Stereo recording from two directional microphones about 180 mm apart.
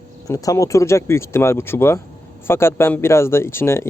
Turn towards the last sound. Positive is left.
turn(degrees=15)  # may be behind; listen again after turning